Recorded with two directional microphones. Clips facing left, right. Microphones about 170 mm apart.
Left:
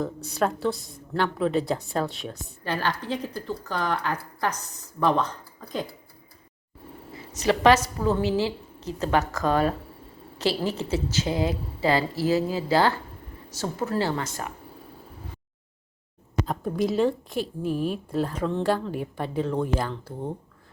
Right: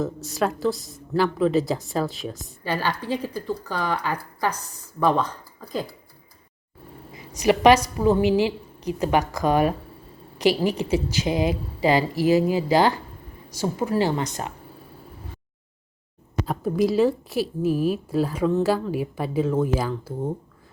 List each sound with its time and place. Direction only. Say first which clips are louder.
0.0 s a woman's voice: right 1 dB; centre (ahead or behind)
7.1 s a woman's voice: right 4 dB; 15° right (ahead or behind)
16.5 s a woman's voice: right 5 dB; 5° right (ahead or behind)